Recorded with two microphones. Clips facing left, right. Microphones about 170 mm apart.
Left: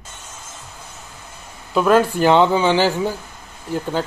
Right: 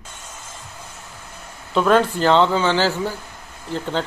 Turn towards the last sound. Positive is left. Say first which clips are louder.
# left 2 dB
turn(degrees=10)  # may be behind; listen again after turning